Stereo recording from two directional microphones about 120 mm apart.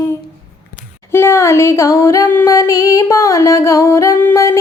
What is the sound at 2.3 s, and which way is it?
Music, 20° left (ahead or behind).